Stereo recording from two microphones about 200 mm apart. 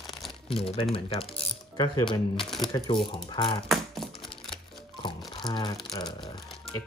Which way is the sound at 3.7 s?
Centre (ahead or behind).